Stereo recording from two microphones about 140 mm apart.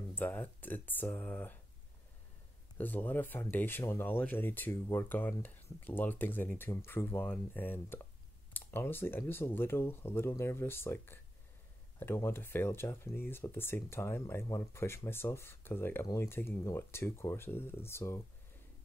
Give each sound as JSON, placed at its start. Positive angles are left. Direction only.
{"t": 0.1, "sound": "speech", "side_deg": 15}
{"t": 2.8, "sound": "speech", "side_deg": 15}